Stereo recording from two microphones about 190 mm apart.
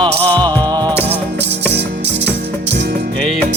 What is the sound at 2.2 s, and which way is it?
Music, 65° right (ahead or behind).